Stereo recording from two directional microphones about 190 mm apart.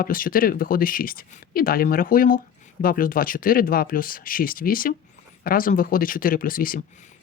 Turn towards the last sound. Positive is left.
turn(degrees=50)  # may be behind; listen again after turning